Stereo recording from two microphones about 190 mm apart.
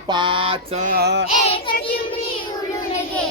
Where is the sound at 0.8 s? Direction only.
55° right (ahead or behind).